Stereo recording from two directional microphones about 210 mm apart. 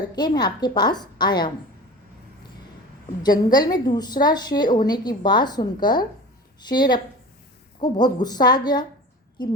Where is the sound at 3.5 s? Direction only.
20° left (ahead or behind).